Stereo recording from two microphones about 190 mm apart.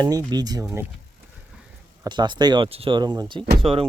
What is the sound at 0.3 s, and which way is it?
Speech, 20° right (ahead or behind).